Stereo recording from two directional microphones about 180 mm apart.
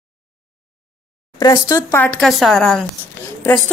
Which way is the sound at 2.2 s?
Centre (ahead or behind).